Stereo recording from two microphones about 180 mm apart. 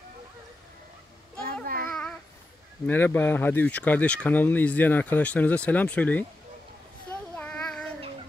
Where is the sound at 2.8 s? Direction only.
10° left (ahead or behind).